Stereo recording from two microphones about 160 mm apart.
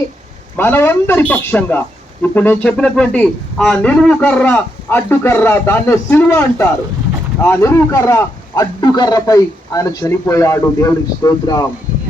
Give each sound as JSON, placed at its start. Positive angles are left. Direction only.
{"t": 0.5, "sound": "a man's voice", "side_deg": 15}